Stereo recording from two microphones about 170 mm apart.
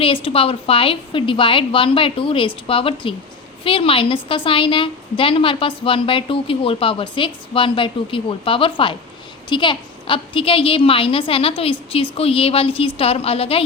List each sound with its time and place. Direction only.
0.0 s a woman's voice: 35° left (ahead or behind)